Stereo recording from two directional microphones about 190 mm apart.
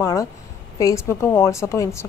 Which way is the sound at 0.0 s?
20° left (ahead or behind).